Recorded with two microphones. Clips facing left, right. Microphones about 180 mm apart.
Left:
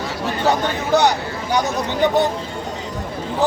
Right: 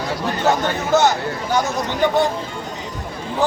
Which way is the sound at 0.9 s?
15° left (ahead or behind).